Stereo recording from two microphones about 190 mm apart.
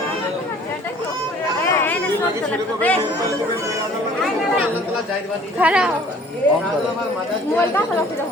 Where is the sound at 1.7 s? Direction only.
10° left (ahead or behind).